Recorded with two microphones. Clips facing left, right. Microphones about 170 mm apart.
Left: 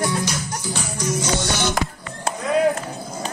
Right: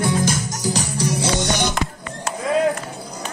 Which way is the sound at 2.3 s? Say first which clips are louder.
Right 1 dB; 10° right (ahead or behind).